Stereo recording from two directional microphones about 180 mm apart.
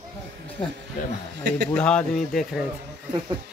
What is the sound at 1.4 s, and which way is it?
Speech, 70° right (ahead or behind).